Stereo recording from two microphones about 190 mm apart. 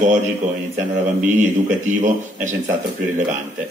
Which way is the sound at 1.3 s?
40° right (ahead or behind).